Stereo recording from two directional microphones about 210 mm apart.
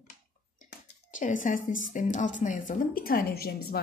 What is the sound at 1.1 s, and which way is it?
A woman's voice, 40° left (ahead or behind).